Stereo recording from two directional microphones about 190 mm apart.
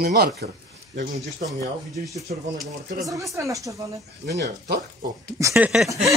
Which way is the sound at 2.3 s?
50° right (ahead or behind).